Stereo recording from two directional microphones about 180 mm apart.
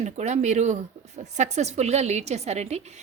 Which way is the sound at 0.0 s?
40° right (ahead or behind).